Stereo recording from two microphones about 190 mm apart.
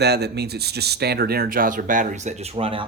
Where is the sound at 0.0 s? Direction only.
60° right (ahead or behind).